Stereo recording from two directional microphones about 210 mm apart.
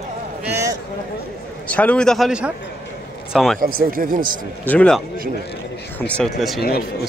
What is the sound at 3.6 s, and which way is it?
Speech, 40° right (ahead or behind).